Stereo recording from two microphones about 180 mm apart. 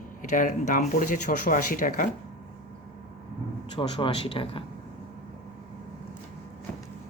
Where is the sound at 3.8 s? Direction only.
25° left (ahead or behind).